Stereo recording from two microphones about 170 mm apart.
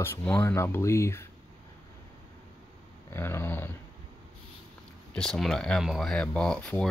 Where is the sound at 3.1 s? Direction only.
15° left (ahead or behind).